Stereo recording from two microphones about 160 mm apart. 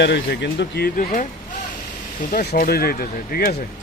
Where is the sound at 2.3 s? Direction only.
60° left (ahead or behind).